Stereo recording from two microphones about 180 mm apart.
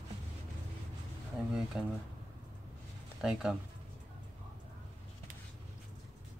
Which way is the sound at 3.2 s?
5° right (ahead or behind).